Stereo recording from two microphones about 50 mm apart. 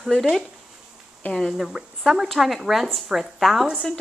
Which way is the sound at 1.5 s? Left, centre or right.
Centre.